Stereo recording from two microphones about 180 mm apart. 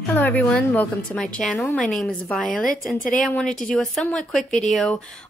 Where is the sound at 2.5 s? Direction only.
50° left (ahead or behind).